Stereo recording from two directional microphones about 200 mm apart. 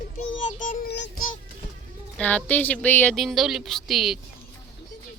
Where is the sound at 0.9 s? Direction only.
60° left (ahead or behind).